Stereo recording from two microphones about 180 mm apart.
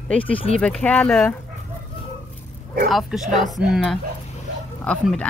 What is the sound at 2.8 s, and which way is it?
Speech, centre (ahead or behind).